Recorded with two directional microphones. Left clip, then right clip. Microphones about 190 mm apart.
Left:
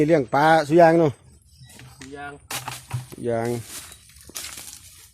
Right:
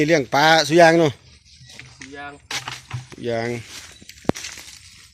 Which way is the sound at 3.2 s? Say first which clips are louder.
Even; 5° left (ahead or behind).